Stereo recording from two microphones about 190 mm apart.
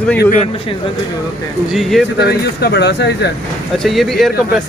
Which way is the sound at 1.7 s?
Centre (ahead or behind).